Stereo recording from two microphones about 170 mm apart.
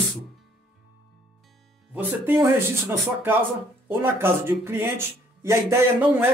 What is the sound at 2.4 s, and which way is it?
Speech, 20° right (ahead or behind).